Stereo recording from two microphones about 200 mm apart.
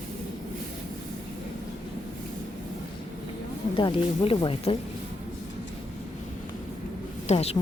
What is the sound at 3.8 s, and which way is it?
Speech, 25° left (ahead or behind).